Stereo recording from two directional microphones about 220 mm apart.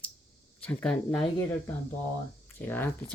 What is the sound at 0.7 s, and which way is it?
Speech, 5° left (ahead or behind).